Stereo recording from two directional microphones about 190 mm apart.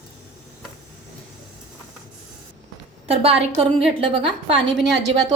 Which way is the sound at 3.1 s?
30° right (ahead or behind).